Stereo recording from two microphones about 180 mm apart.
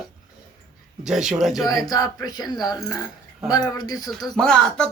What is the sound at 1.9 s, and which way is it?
Speech, 20° left (ahead or behind).